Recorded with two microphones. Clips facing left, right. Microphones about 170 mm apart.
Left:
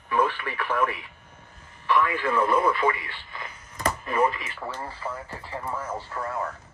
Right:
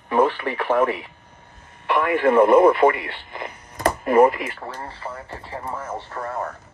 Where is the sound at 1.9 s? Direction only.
55° right (ahead or behind).